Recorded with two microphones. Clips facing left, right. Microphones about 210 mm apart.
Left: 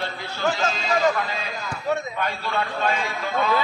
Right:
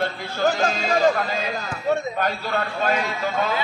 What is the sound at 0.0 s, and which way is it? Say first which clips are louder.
A man's voice: right 4 dB; 45° right (ahead or behind).